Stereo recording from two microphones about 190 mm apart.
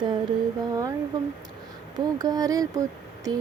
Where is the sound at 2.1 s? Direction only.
20° right (ahead or behind).